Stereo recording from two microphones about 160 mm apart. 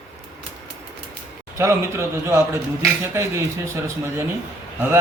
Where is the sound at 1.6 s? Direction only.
15° right (ahead or behind).